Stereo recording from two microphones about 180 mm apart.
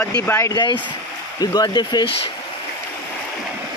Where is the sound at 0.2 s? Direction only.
15° left (ahead or behind).